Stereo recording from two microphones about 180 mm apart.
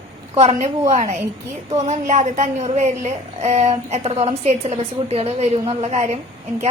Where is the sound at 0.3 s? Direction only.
40° right (ahead or behind).